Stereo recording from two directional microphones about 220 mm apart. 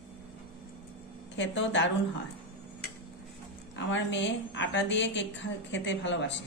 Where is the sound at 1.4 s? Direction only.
55° left (ahead or behind).